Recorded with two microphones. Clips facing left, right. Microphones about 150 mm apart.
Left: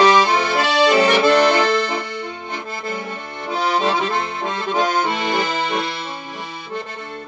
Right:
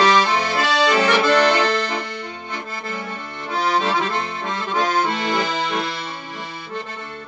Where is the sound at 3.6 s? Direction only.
15° left (ahead or behind).